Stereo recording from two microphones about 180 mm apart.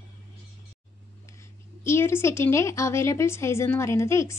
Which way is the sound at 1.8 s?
15° left (ahead or behind).